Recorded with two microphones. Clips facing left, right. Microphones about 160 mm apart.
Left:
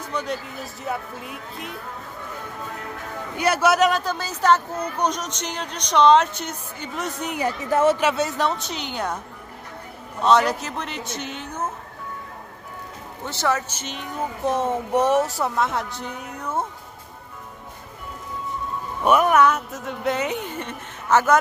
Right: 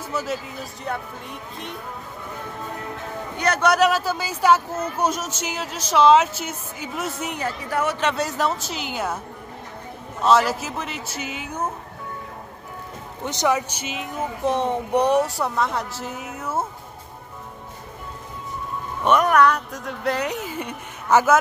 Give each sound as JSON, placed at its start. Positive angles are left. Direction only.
{"t": 0.0, "sound": "speech", "side_deg": -5}
{"t": 3.3, "sound": "speech", "side_deg": 5}
{"t": 7.3, "sound": "a woman's voice", "side_deg": 15}
{"t": 8.0, "sound": "speech", "side_deg": 0}
{"t": 10.2, "sound": "speech", "side_deg": -5}
{"t": 13.2, "sound": "speech", "side_deg": -15}
{"t": 19.0, "sound": "speech", "side_deg": 5}